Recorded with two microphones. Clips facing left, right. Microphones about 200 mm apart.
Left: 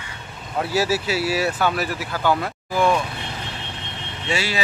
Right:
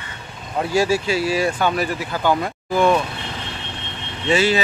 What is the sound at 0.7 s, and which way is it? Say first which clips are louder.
Speech: right 3 dB; 5° left (ahead or behind).